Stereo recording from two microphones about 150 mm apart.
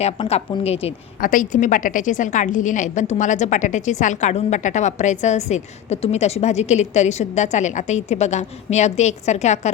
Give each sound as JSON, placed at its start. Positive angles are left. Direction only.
{"t": 0.0, "sound": "a woman's voice", "side_deg": 45}
{"t": 1.2, "sound": "a woman's voice", "side_deg": 60}